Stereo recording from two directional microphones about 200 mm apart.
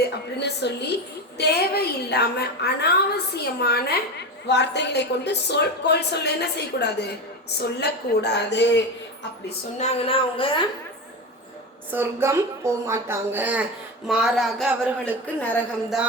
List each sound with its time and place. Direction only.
0.3 s a woman's voice: 55° left (ahead or behind)
9.7 s a woman's voice: 30° left (ahead or behind)
11.9 s a woman's voice: 10° right (ahead or behind)
15.4 s a woman's voice: 10° left (ahead or behind)